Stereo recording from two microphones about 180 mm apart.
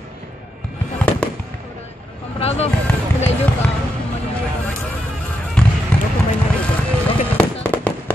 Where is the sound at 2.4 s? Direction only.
35° left (ahead or behind).